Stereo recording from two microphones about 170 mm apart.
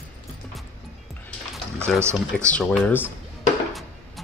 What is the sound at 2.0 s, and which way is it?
Speech, 15° right (ahead or behind).